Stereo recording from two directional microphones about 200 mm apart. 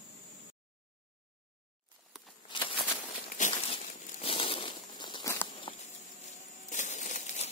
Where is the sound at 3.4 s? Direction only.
35° left (ahead or behind).